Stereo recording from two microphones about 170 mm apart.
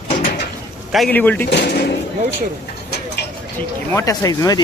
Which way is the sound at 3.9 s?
20° left (ahead or behind).